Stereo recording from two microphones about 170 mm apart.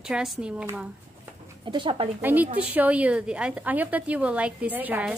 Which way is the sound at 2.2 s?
10° right (ahead or behind).